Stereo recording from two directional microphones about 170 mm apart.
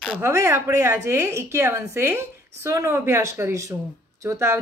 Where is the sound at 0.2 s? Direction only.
15° right (ahead or behind).